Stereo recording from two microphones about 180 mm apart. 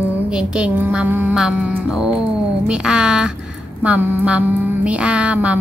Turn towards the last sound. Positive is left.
turn(degrees=-5)  # may be behind; listen again after turning